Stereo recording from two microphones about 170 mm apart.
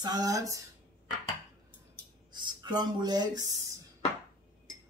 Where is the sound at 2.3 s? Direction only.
25° right (ahead or behind).